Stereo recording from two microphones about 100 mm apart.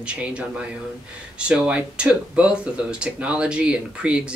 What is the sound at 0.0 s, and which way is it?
Speech, 10° right (ahead or behind).